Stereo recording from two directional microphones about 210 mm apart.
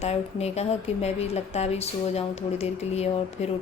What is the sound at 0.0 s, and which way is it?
Speech, 30° left (ahead or behind).